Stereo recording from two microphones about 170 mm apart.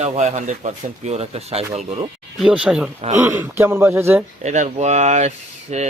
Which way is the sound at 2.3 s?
5° right (ahead or behind).